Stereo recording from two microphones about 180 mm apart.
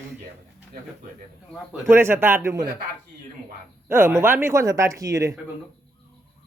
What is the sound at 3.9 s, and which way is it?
Speech, 15° right (ahead or behind).